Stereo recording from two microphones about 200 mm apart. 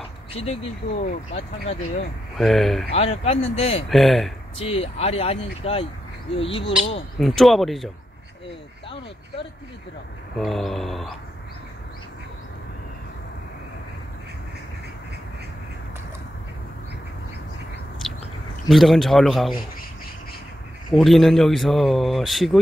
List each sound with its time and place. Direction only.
1.0 s speech: 30° left (ahead or behind)
2.3 s a man's voice: centre (ahead or behind)
3.0 s speech: 30° left (ahead or behind)
3.9 s a man's voice: centre (ahead or behind)
4.6 s speech: 30° left (ahead or behind)
7.2 s a man's voice: centre (ahead or behind)
10.3 s a man's voice: centre (ahead or behind)
18.0 s a sound: centre (ahead or behind)
18.7 s a man's voice: centre (ahead or behind)
20.9 s a man's voice: centre (ahead or behind)